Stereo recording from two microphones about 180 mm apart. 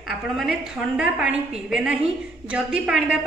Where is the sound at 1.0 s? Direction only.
5° right (ahead or behind).